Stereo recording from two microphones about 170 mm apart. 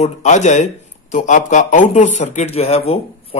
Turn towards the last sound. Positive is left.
turn(degrees=35)  # may be behind; listen again after turning